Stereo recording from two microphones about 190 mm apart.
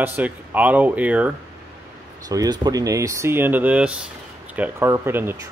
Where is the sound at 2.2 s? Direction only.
20° right (ahead or behind).